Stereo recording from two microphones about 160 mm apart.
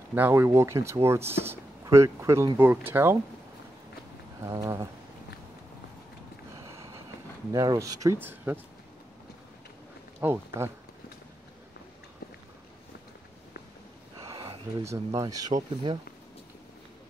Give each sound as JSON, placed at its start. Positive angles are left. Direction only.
{"t": 0.1, "sound": "speech", "side_deg": -15}
{"t": 4.5, "sound": "speech", "side_deg": -20}
{"t": 7.5, "sound": "speech", "side_deg": -20}
{"t": 10.2, "sound": "speech", "side_deg": -15}
{"t": 14.2, "sound": "speech", "side_deg": -25}